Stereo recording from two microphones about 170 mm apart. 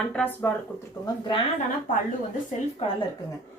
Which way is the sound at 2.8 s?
35° left (ahead or behind).